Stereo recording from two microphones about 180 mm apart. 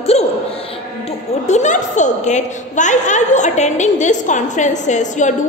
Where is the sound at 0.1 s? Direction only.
35° left (ahead or behind).